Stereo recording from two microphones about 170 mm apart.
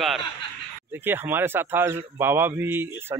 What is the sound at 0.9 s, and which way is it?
A man's voice, 10° right (ahead or behind).